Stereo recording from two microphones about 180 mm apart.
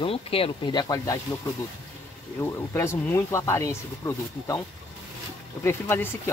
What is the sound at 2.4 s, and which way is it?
Speech, 15° left (ahead or behind).